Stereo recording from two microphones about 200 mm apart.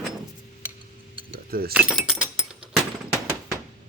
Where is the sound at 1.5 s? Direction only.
50° right (ahead or behind).